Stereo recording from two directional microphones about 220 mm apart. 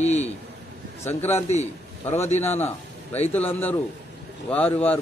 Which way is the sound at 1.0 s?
10° left (ahead or behind).